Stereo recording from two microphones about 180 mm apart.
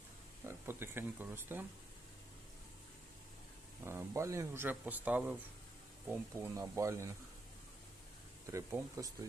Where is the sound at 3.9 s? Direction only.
15° right (ahead or behind).